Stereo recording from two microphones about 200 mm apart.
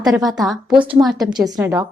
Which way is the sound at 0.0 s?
Centre (ahead or behind).